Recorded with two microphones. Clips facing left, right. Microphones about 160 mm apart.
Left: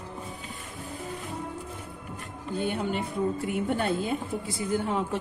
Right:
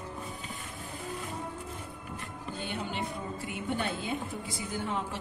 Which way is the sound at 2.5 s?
50° left (ahead or behind).